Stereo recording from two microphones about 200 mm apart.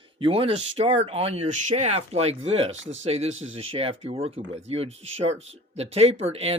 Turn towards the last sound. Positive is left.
turn(degrees=-30)  # may be behind; listen again after turning